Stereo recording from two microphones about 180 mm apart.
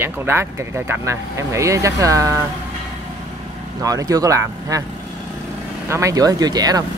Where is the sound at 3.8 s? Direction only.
20° right (ahead or behind).